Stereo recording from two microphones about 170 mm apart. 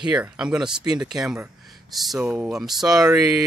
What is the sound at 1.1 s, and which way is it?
Speech, 5° right (ahead or behind).